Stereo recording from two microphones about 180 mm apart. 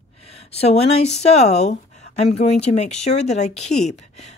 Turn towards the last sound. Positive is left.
turn(degrees=35)  # may be behind; listen again after turning